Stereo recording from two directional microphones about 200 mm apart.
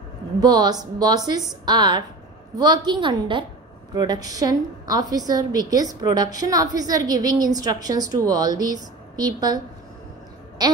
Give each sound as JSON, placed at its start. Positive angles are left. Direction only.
{"t": 0.4, "sound": "a woman's voice", "side_deg": -20}